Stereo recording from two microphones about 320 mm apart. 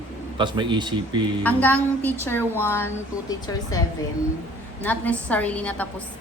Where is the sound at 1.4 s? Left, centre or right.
Centre.